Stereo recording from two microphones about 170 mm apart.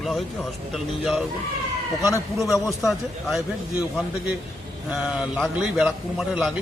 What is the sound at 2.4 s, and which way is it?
Speech, 20° left (ahead or behind).